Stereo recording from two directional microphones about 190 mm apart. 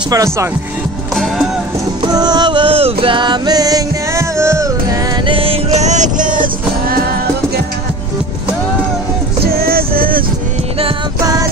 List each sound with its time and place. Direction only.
0.1 s speech: 15° right (ahead or behind)
2.0 s music: 20° right (ahead or behind)
5.2 s music: 30° right (ahead or behind); by 7.0 s 45° right (ahead or behind)
9.4 s music: 50° right (ahead or behind)